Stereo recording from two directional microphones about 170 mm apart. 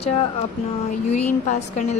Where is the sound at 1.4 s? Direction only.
45° left (ahead or behind).